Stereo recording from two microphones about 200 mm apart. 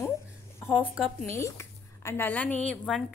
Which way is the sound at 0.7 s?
10° left (ahead or behind).